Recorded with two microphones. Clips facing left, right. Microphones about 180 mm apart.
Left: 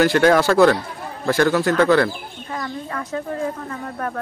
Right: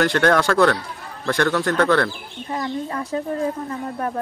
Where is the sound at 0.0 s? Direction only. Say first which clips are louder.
Left 3 dB; 5° left (ahead or behind).